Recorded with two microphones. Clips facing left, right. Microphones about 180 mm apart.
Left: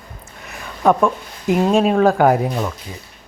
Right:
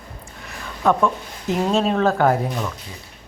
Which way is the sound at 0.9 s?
15° left (ahead or behind).